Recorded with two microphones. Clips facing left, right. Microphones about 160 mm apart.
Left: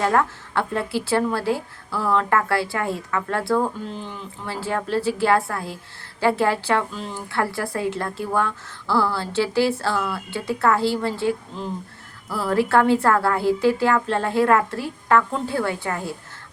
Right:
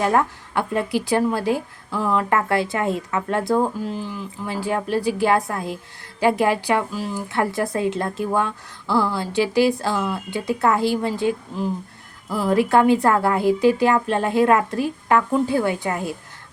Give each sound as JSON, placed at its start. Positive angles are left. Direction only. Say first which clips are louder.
{"t": 0.0, "sound": "a woman's voice", "louder": "right 1 dB", "side_deg": -20}
{"t": 3.8, "sound": "speech", "louder": "right 4 dB", "side_deg": -5}
{"t": 4.4, "sound": "a woman's voice", "louder": "right 2 dB", "side_deg": -15}